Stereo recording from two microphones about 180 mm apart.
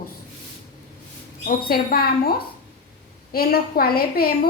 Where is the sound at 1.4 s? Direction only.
55° left (ahead or behind).